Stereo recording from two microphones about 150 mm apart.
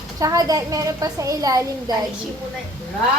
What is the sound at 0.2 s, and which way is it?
A child's voice, 25° right (ahead or behind).